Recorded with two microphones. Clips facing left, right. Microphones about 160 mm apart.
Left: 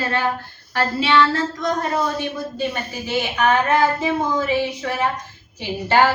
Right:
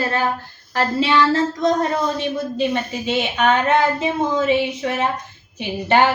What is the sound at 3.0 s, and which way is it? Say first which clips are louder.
A woman's voice: even; 20° right (ahead or behind).